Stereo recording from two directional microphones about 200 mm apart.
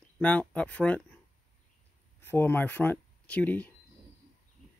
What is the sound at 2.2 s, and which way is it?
Speech, 10° left (ahead or behind).